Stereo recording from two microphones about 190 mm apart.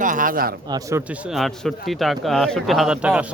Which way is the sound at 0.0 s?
45° right (ahead or behind).